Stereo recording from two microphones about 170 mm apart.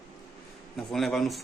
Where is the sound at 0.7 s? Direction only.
Centre (ahead or behind).